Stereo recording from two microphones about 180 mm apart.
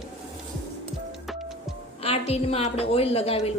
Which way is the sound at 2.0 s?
35° left (ahead or behind).